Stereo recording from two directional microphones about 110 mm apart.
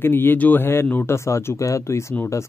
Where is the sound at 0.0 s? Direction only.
20° left (ahead or behind).